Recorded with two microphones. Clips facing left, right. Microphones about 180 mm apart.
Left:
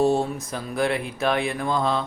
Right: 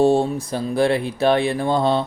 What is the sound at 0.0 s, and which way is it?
Speech, 30° right (ahead or behind).